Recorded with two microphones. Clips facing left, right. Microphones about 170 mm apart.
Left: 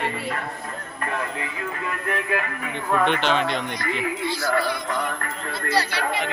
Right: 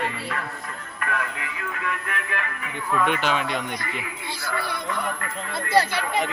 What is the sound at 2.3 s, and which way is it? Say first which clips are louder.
Speech: left 5 dB; 45° left (ahead or behind).